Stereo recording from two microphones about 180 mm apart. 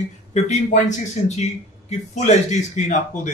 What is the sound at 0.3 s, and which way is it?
Speech, 40° left (ahead or behind).